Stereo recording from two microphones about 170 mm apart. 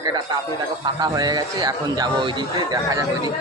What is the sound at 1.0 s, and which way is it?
A man's voice, 25° right (ahead or behind).